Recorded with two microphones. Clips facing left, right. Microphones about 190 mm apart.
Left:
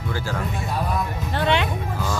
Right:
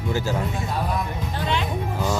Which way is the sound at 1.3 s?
70° left (ahead or behind).